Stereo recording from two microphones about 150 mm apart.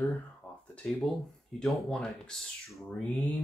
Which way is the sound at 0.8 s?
5° left (ahead or behind).